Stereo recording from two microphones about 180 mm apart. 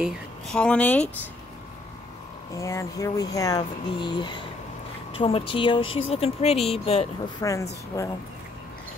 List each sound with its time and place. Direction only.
0.0 s speech: 5° left (ahead or behind)
2.5 s speech: 15° left (ahead or behind); by 7.1 s 35° left (ahead or behind)
7.4 s a woman's voice: 15° left (ahead or behind)